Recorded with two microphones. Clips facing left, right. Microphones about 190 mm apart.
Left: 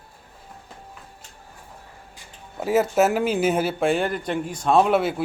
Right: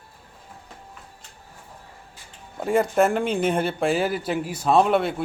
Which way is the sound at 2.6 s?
5° left (ahead or behind).